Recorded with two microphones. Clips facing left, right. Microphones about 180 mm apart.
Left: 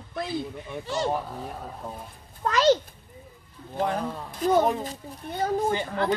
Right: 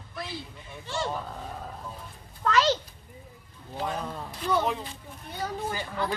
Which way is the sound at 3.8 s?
50° left (ahead or behind).